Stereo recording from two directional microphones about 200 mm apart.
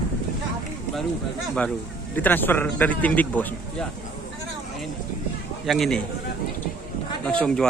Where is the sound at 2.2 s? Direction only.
10° left (ahead or behind).